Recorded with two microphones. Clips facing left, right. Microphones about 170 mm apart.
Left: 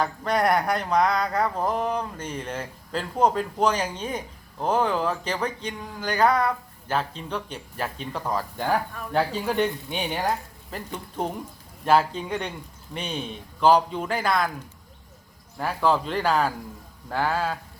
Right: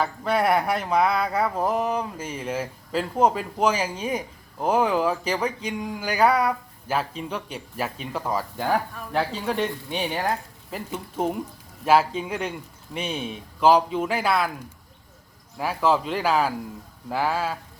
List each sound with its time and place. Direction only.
0.0 s speech: 5° right (ahead or behind)
15.5 s speech: centre (ahead or behind)